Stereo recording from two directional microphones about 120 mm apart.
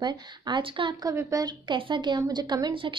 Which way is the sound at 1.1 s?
30° right (ahead or behind).